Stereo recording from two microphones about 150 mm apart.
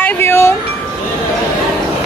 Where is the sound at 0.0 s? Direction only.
15° left (ahead or behind).